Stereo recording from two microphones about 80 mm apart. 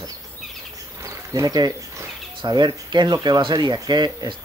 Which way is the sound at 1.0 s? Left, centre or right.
Right.